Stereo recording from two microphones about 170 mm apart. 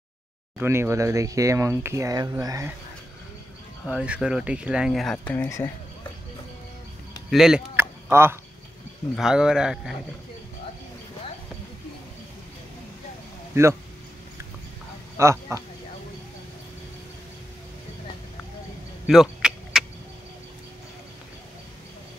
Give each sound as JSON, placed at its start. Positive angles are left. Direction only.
{"t": 0.6, "sound": "speech", "side_deg": -15}
{"t": 3.8, "sound": "speech", "side_deg": -5}
{"t": 7.2, "sound": "speech", "side_deg": 0}
{"t": 7.7, "sound": "a sound", "side_deg": -15}
{"t": 9.1, "sound": "speech", "side_deg": -5}
{"t": 13.5, "sound": "speech", "side_deg": -15}
{"t": 15.2, "sound": "speech", "side_deg": -15}
{"t": 19.0, "sound": "a sound", "side_deg": 0}